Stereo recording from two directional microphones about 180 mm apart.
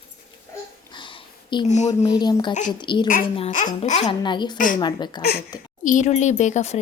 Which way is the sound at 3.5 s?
45° left (ahead or behind).